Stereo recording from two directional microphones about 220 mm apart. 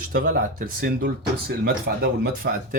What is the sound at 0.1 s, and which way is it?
Speech, 40° right (ahead or behind).